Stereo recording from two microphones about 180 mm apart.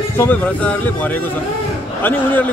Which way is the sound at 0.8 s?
10° left (ahead or behind).